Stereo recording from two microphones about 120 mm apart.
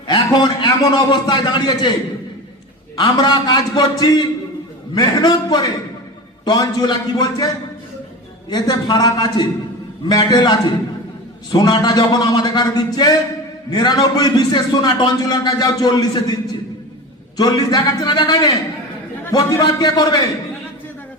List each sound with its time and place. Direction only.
0.1 s a man's voice: 40° left (ahead or behind)
2.9 s a man's voice: 35° left (ahead or behind)
17.3 s a man's voice: 35° left (ahead or behind)